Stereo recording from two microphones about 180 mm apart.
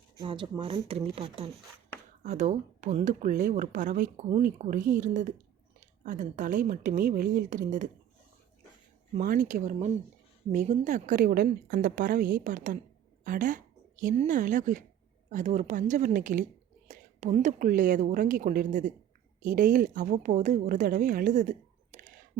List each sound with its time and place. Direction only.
0.2 s speech: 25° right (ahead or behind); by 7.9 s 45° right (ahead or behind)
9.1 s speech: 50° right (ahead or behind)